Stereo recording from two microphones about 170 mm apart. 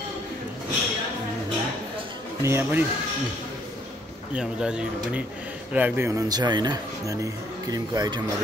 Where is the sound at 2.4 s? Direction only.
15° right (ahead or behind).